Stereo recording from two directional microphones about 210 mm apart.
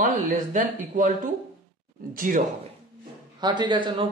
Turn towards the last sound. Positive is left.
turn(degrees=-20)  # may be behind; listen again after turning